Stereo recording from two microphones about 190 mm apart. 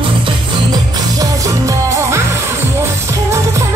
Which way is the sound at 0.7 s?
20° right (ahead or behind).